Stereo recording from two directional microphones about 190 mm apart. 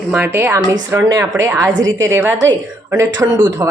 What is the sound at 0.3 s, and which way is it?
Speech, 10° right (ahead or behind).